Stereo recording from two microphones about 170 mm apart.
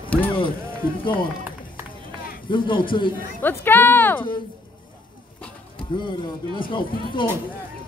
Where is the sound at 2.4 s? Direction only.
30° left (ahead or behind).